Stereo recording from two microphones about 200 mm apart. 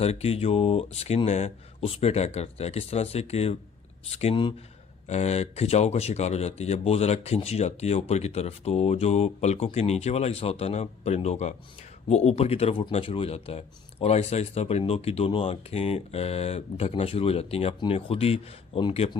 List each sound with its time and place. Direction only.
0.0 s speech: 30° left (ahead or behind)